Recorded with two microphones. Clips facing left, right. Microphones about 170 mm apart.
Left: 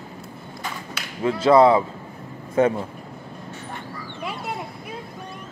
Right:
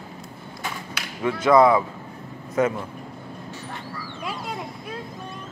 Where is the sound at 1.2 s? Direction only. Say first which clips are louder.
Left 2 dB; 30° left (ahead or behind).